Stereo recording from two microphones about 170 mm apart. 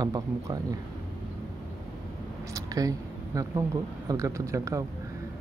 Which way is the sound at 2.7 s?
20° right (ahead or behind).